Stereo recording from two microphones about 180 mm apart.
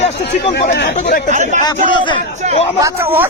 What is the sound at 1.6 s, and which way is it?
Speech, 25° left (ahead or behind).